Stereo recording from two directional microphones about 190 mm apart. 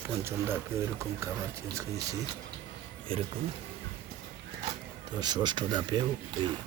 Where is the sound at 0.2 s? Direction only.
15° right (ahead or behind).